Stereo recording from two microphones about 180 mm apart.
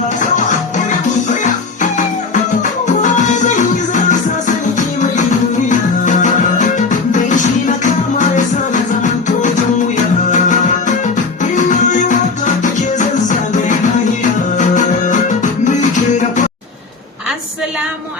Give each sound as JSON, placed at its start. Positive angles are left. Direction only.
{"t": 0.2, "sound": "music", "side_deg": 45}